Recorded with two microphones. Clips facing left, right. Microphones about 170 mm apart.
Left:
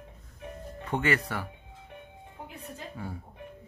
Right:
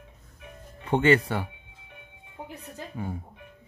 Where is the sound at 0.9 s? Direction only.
30° right (ahead or behind).